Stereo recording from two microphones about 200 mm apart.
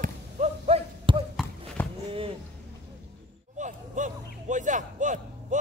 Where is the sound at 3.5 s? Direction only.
40° right (ahead or behind).